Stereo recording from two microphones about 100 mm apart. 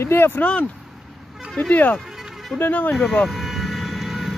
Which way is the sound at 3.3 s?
Centre (ahead or behind).